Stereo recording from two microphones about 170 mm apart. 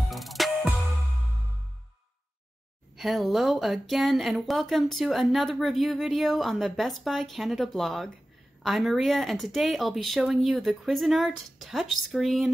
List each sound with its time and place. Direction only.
0.1 s music: centre (ahead or behind)
3.0 s speech: centre (ahead or behind)